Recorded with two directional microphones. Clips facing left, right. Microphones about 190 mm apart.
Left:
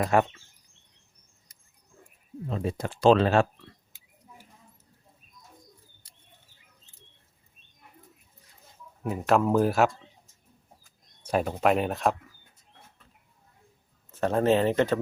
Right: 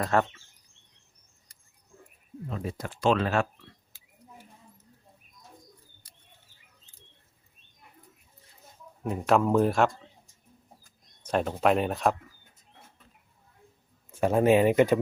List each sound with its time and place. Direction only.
0.0 s speech: 15° left (ahead or behind)
2.5 s speech: 25° left (ahead or behind)
9.0 s speech: centre (ahead or behind)
11.2 s speech: 5° left (ahead or behind)
14.1 s speech: 10° right (ahead or behind)